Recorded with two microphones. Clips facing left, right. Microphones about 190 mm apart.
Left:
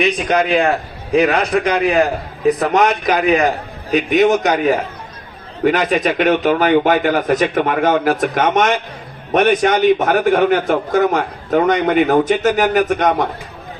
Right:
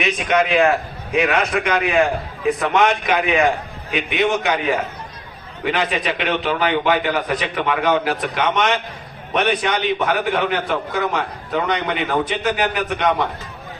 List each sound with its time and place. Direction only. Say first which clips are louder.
0.0 s a man's voice: left 3 dB; centre (ahead or behind)
1.1 s a man's voice: left 4 dB; 35° left (ahead or behind)
5.9 s a man's voice: left 7 dB; 45° left (ahead or behind)